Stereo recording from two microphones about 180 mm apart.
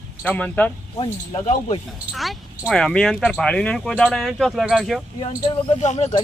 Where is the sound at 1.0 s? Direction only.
35° left (ahead or behind).